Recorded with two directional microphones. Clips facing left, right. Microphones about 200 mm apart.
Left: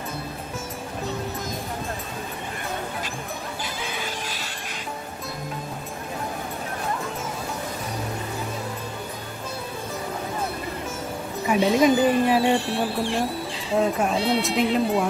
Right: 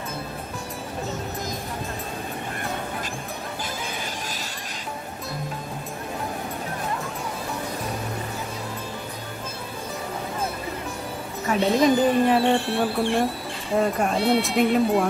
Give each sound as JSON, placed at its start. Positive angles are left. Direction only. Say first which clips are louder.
{"t": 11.4, "sound": "speech", "louder": "left 1 dB", "side_deg": 5}
{"t": 12.5, "sound": "speech", "louder": "right 1 dB", "side_deg": -55}
{"t": 13.7, "sound": "speech", "louder": "even", "side_deg": 0}